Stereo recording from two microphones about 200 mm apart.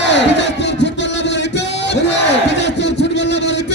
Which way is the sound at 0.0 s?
60° left (ahead or behind).